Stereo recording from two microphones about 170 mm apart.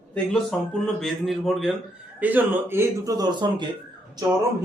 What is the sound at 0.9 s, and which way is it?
Speech, centre (ahead or behind).